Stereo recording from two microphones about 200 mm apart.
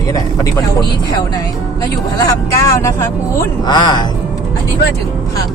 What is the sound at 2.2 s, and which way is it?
Speech, 15° left (ahead or behind).